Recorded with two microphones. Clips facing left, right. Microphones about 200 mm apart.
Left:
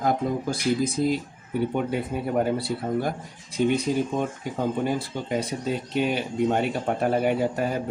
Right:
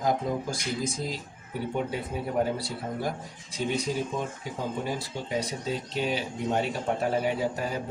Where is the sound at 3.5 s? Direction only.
55° left (ahead or behind).